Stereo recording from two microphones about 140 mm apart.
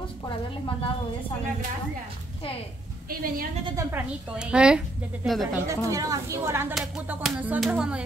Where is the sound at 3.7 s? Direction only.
25° right (ahead or behind).